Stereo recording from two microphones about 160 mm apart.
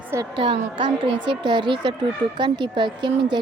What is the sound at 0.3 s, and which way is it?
A woman's voice, 35° right (ahead or behind).